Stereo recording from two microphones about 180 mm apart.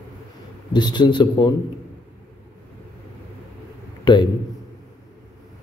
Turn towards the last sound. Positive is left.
turn(degrees=25)  # may be behind; listen again after turning